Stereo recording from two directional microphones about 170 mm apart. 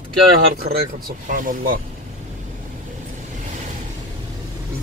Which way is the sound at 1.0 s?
55° right (ahead or behind).